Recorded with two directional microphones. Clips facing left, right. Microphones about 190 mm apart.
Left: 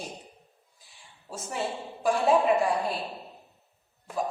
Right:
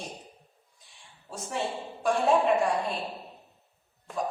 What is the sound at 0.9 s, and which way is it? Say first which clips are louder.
A woman's voice: left 2 dB; centre (ahead or behind).